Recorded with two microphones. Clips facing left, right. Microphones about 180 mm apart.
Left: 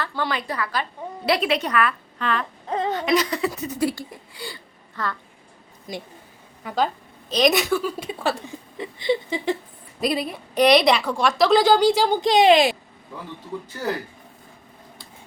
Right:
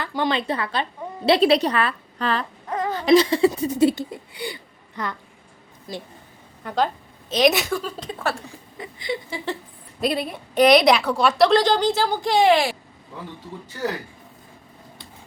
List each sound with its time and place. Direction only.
0.0 s a woman's voice: 15° right (ahead or behind); by 2.5 s 35° right (ahead or behind)
2.6 s baby cry: 25° left (ahead or behind)
2.9 s speech: 30° right (ahead or behind)
6.6 s a woman's voice: centre (ahead or behind); by 9.4 s 25° left (ahead or behind)
10.0 s a woman's voice: centre (ahead or behind); by 12.7 s 20° left (ahead or behind)